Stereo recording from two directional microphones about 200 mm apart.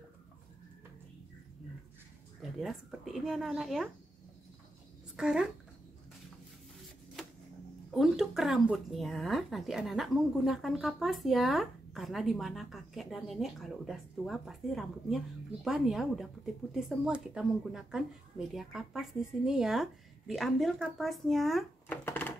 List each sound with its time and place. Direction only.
2.4 s speech: centre (ahead or behind)
5.1 s a woman's voice: 5° right (ahead or behind)
7.9 s speech: centre (ahead or behind)
22.0 s wood: 10° left (ahead or behind)